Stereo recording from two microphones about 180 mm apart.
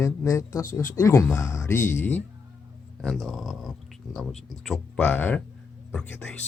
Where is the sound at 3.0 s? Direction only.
Centre (ahead or behind).